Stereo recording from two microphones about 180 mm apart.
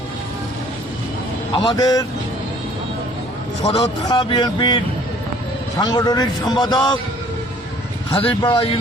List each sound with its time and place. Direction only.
1.5 s a man's voice: 25° left (ahead or behind)
3.6 s a man's voice: 35° left (ahead or behind)
8.1 s a man's voice: 30° left (ahead or behind)